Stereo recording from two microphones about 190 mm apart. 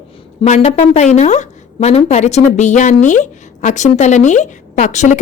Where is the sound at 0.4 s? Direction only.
35° left (ahead or behind).